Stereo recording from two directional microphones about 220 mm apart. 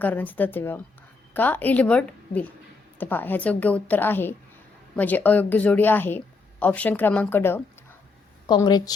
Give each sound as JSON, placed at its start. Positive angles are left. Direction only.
{"t": 0.0, "sound": "a woman's voice", "side_deg": 10}